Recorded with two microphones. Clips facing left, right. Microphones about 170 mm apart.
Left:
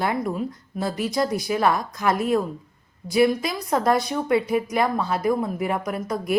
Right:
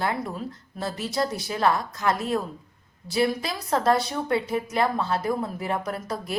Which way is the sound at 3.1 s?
15° left (ahead or behind).